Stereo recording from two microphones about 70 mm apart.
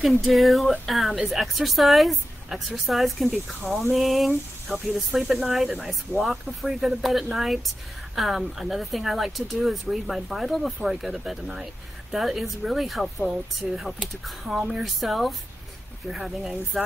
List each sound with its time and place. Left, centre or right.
0.0 s speech: centre